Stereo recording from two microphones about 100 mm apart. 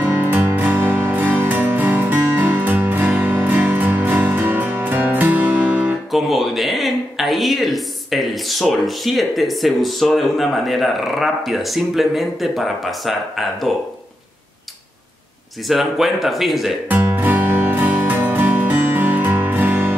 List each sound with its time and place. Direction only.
0.0 s music: 15° right (ahead or behind)
6.1 s speech: centre (ahead or behind)
15.7 s speech: centre (ahead or behind)
16.9 s music: 20° right (ahead or behind)